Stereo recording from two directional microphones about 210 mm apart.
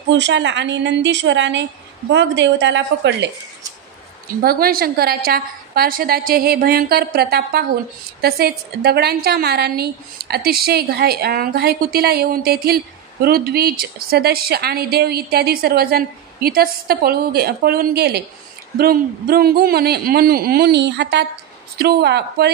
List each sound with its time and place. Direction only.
0.1 s a woman's voice: 60° right (ahead or behind)
4.4 s a woman's voice: 45° right (ahead or behind)